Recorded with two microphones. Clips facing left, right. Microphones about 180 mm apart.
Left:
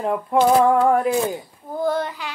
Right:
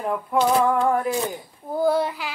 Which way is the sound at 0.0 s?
20° left (ahead or behind).